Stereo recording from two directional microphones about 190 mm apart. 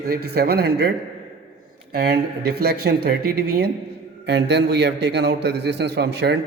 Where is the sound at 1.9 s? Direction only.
55° right (ahead or behind).